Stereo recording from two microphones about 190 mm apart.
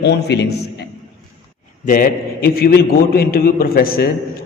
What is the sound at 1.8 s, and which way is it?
A man's voice, 45° left (ahead or behind).